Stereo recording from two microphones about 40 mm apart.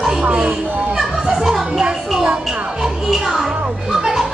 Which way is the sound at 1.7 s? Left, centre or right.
Centre.